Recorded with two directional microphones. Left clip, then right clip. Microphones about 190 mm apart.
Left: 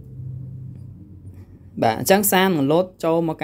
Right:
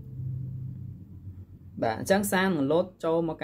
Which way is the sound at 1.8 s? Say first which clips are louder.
Left 8 dB; 40° left (ahead or behind).